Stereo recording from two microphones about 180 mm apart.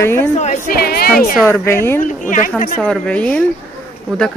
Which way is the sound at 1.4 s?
15° left (ahead or behind).